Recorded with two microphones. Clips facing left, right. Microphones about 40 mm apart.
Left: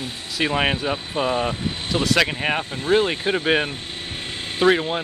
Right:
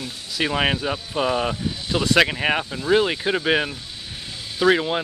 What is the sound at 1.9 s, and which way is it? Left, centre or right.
Speech, centre.